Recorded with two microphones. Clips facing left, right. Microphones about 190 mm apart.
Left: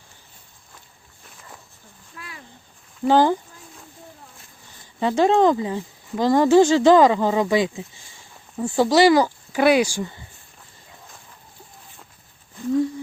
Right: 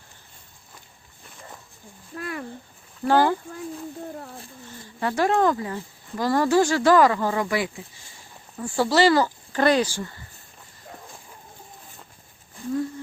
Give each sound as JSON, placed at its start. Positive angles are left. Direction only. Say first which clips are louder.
{"t": 2.1, "sound": "a sound", "louder": "right 10 dB", "side_deg": -50}
{"t": 3.1, "sound": "speech", "louder": "left 3 dB", "side_deg": 20}
{"t": 4.9, "sound": "speech", "louder": "left 4 dB", "side_deg": 20}